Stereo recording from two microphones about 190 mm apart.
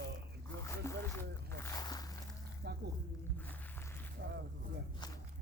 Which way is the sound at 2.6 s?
60° right (ahead or behind).